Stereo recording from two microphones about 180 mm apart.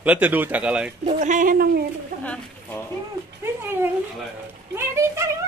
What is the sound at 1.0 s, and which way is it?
Speech, 45° right (ahead or behind).